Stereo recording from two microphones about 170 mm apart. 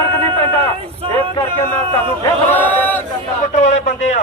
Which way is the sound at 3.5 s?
45° left (ahead or behind).